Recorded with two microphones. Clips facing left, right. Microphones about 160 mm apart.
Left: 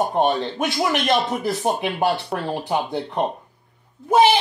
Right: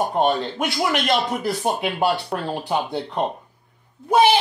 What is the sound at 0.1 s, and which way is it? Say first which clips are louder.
A man's voice: even; 20° left (ahead or behind).